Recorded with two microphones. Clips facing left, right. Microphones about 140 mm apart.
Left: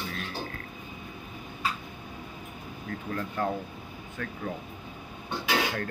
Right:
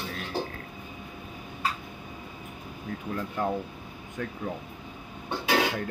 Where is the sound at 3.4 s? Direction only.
10° right (ahead or behind).